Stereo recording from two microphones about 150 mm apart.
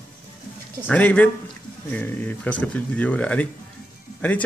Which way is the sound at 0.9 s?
10° left (ahead or behind).